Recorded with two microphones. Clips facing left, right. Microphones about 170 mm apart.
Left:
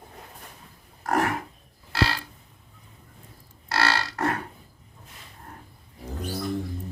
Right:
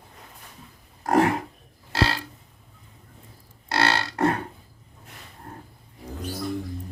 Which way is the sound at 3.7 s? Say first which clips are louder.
Right 2 dB; 25° right (ahead or behind).